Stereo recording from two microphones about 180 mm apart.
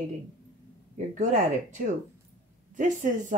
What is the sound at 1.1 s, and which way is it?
Speech, 45° right (ahead or behind).